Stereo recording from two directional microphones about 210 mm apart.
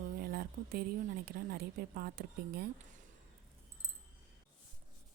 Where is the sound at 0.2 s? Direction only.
45° right (ahead or behind).